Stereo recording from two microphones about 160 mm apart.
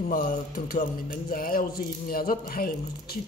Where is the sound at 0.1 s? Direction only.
65° left (ahead or behind).